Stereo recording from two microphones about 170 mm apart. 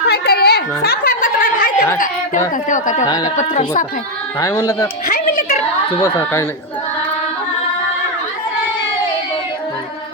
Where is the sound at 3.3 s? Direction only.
35° left (ahead or behind).